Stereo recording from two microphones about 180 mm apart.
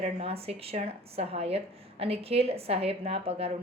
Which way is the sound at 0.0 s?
35° right (ahead or behind).